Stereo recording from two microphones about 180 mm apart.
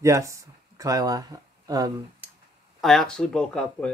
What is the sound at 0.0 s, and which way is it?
Speech, 15° right (ahead or behind).